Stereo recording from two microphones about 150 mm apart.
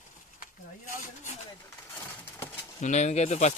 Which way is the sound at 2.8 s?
50° left (ahead or behind).